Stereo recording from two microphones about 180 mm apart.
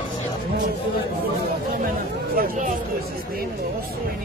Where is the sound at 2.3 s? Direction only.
55° right (ahead or behind).